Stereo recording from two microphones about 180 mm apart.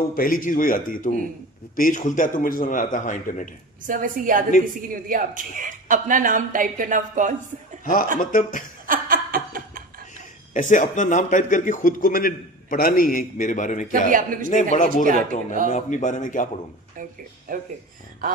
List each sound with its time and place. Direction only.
0.1 s speech: 50° left (ahead or behind)
3.8 s a woman's voice: 50° right (ahead or behind)
7.8 s speech: 50° left (ahead or behind)
8.8 s laughter: 50° right (ahead or behind)
10.1 s speech: 45° left (ahead or behind)
14.1 s a woman's voice: 50° right (ahead or behind)
14.5 s speech: 45° left (ahead or behind)
15.0 s a woman's voice: 45° right (ahead or behind)
15.7 s speech: 45° left (ahead or behind)
17.5 s a woman's voice: 55° right (ahead or behind)